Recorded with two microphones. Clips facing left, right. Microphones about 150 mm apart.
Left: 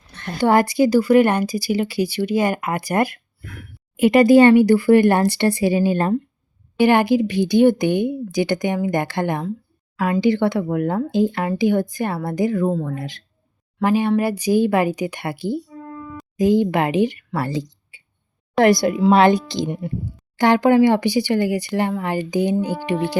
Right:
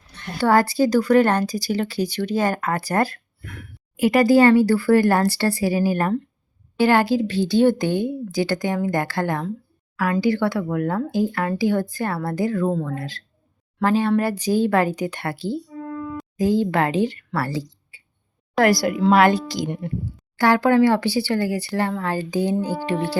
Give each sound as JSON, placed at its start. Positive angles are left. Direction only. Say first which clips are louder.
{"t": 0.3, "sound": "speech", "louder": "left 2 dB", "side_deg": 20}